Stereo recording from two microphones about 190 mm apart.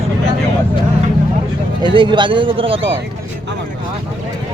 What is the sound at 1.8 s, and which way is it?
Speech, 25° right (ahead or behind).